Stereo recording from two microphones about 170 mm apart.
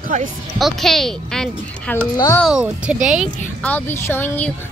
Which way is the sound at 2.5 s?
5° right (ahead or behind).